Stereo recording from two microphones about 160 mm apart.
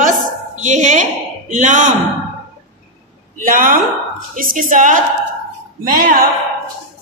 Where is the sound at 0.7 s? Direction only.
50° right (ahead or behind).